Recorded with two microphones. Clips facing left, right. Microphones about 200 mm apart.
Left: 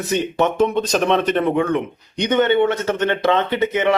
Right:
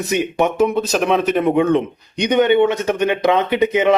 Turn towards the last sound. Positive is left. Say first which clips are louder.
# right 3 dB
turn(degrees=-15)  # may be behind; listen again after turning